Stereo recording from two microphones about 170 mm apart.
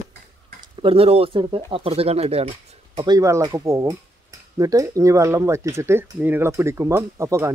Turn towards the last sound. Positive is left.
turn(degrees=-15)  # may be behind; listen again after turning